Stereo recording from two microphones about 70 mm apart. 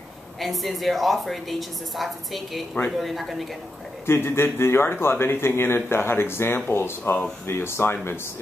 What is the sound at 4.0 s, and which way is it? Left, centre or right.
Speech, left.